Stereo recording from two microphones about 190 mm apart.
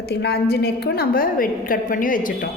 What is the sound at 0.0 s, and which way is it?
A woman's voice, 60° left (ahead or behind).